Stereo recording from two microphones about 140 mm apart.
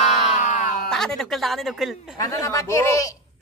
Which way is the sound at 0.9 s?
5° left (ahead or behind).